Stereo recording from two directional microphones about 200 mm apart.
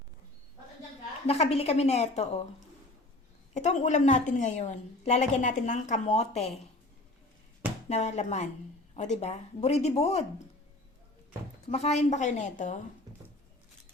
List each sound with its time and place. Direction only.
1.3 s a woman's voice: 30° left (ahead or behind)
3.5 s a woman's voice: 35° left (ahead or behind)
7.9 s a woman's voice: 35° left (ahead or behind)
11.6 s a woman's voice: 30° left (ahead or behind)